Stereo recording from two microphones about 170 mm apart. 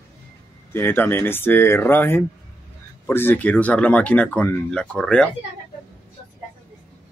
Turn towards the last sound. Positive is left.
turn(degrees=5)  # may be behind; listen again after turning